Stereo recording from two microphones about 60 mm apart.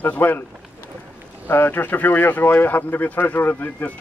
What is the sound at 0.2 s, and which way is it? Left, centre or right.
Speech, left.